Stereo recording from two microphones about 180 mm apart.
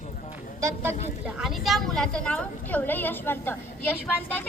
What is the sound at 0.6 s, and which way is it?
Speech, 15° right (ahead or behind).